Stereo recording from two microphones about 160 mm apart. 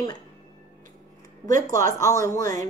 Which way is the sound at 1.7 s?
15° left (ahead or behind).